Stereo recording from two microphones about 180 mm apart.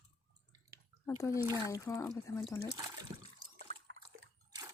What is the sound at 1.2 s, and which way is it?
Speech, 15° left (ahead or behind).